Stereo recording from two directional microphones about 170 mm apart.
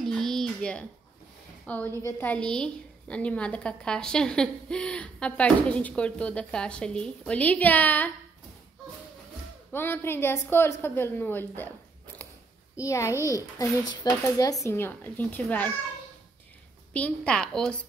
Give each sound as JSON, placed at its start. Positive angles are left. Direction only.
{"t": 0.0, "sound": "a sound", "side_deg": 0}
{"t": 1.7, "sound": "a woman's voice", "side_deg": 10}
{"t": 9.7, "sound": "a woman's voice", "side_deg": 15}
{"t": 12.7, "sound": "a woman's voice", "side_deg": 20}
{"t": 16.9, "sound": "a woman's voice", "side_deg": 10}